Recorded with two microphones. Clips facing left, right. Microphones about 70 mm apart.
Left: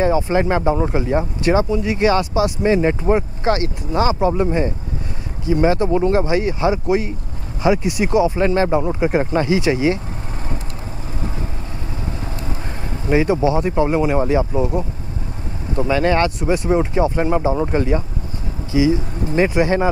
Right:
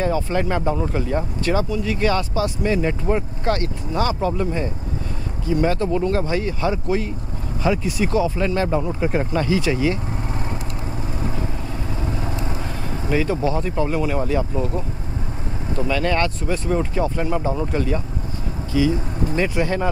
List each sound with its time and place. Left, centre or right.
0.0 s speech: centre
2.8 s speech: left
3.4 s speech: centre
4.3 s speech: left
5.5 s speech: centre
5.9 s speech: left
6.2 s speech: centre
9.4 s speech: centre
12.3 s vehicle: right
13.1 s speech: centre
13.8 s speech: left
16.1 s speech: centre
18.7 s speech: centre